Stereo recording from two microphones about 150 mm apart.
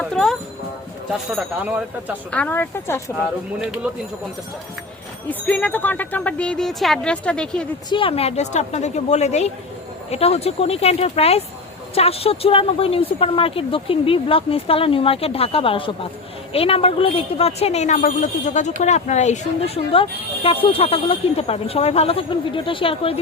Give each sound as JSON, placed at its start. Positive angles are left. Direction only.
{"t": 0.0, "sound": "speech", "side_deg": 5}
{"t": 1.4, "sound": "speech", "side_deg": -10}
{"t": 2.3, "sound": "speech", "side_deg": 10}
{"t": 5.3, "sound": "speech", "side_deg": 10}
{"t": 7.9, "sound": "a woman's voice", "side_deg": 35}